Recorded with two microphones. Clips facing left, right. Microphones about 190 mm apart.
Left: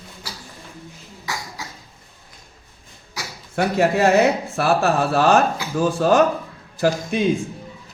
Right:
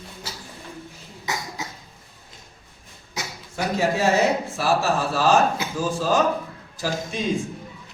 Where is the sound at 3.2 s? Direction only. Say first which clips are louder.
Right 1 dB; 20° right (ahead or behind).